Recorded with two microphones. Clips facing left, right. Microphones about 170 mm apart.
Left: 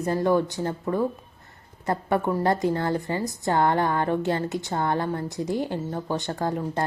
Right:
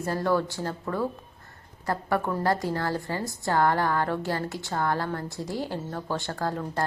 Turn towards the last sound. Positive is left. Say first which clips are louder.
# left 2 dB
turn(degrees=20)  # may be behind; listen again after turning